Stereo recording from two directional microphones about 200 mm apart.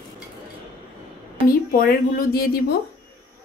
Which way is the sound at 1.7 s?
45° left (ahead or behind).